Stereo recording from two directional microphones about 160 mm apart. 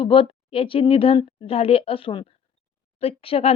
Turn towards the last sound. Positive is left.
turn(degrees=40)  # may be behind; listen again after turning